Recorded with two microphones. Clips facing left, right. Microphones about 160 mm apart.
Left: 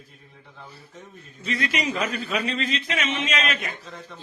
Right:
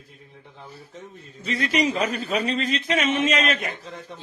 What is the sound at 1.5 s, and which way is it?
Speech, 35° right (ahead or behind).